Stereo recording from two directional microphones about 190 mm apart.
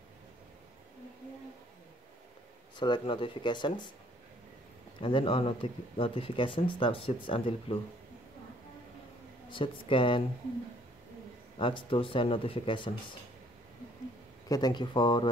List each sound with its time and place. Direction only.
2.8 s speech: 25° left (ahead or behind)
5.0 s speech: 25° left (ahead or behind)
9.5 s speech: 25° left (ahead or behind)
11.5 s speech: 25° left (ahead or behind)
14.5 s speech: 20° left (ahead or behind)